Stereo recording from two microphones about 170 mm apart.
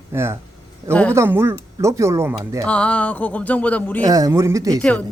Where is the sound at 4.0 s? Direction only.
20° right (ahead or behind).